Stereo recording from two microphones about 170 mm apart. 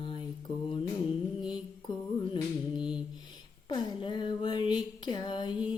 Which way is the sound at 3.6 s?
25° left (ahead or behind).